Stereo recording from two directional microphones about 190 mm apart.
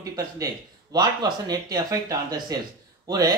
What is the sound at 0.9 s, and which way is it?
Speech, 20° right (ahead or behind).